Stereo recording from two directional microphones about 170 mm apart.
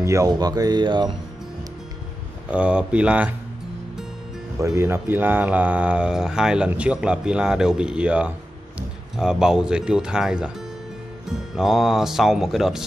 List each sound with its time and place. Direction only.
0.0 s speech: 20° right (ahead or behind)
2.5 s speech: 5° right (ahead or behind)
4.6 s speech: 15° right (ahead or behind)
11.5 s speech: centre (ahead or behind)